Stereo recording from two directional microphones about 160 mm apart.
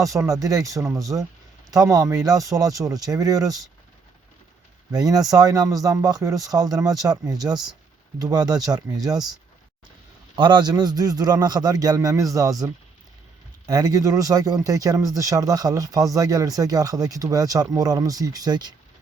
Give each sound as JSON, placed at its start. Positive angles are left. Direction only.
{"t": 0.0, "sound": "speech", "side_deg": -20}
{"t": 4.9, "sound": "speech", "side_deg": -25}
{"t": 10.3, "sound": "speech", "side_deg": -30}